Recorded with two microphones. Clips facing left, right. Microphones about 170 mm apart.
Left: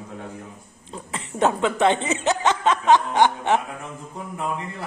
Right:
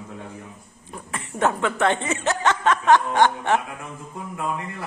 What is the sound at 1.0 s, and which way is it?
Speech, 20° left (ahead or behind).